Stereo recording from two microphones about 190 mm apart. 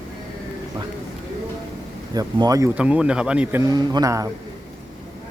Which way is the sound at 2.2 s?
20° right (ahead or behind).